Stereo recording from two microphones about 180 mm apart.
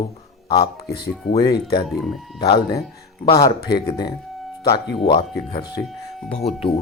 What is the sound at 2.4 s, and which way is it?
Speech, 25° left (ahead or behind).